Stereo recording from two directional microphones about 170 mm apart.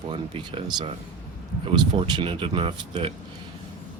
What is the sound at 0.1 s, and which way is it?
Speech, 30° right (ahead or behind).